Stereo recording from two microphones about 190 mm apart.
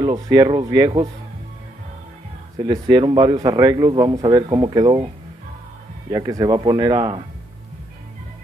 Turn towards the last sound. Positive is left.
turn(degrees=-25)  # may be behind; listen again after turning